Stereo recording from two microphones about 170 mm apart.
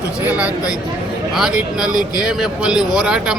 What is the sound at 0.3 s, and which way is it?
A man's voice, 10° right (ahead or behind).